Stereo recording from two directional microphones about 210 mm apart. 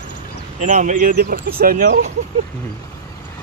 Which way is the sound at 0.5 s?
35° right (ahead or behind).